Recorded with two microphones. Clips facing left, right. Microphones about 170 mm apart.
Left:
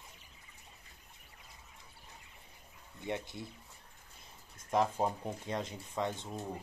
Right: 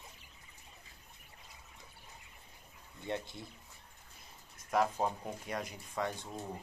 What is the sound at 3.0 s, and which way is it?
Speech, 20° left (ahead or behind).